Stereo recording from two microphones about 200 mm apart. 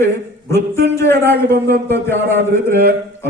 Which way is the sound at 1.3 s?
55° right (ahead or behind).